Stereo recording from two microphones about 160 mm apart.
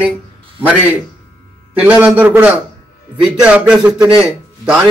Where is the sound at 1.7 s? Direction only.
10° right (ahead or behind).